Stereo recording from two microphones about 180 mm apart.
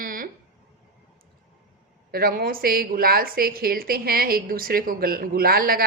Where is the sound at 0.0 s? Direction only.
50° right (ahead or behind).